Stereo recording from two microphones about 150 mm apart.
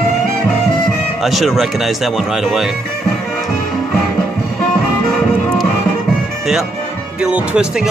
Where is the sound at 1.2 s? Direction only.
Centre (ahead or behind).